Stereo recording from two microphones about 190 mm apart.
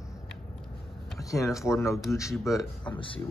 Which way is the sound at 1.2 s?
15° left (ahead or behind).